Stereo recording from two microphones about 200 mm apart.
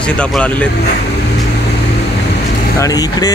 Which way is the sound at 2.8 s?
20° left (ahead or behind).